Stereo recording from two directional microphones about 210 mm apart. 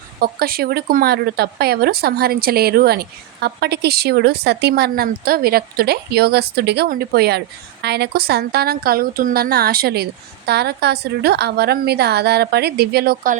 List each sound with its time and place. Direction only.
0.2 s speech: 45° right (ahead or behind)